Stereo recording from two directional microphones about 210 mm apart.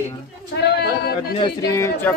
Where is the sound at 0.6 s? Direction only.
50° left (ahead or behind).